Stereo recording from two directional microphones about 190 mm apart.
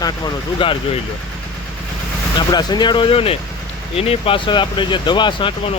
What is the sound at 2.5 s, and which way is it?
Speech, 20° left (ahead or behind).